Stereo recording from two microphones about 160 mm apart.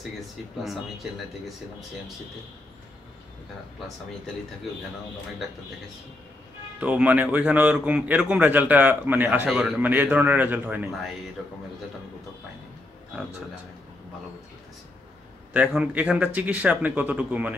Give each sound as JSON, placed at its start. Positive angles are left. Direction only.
{"t": 6.8, "sound": "a man's voice", "side_deg": -10}
{"t": 15.5, "sound": "a man's voice", "side_deg": -5}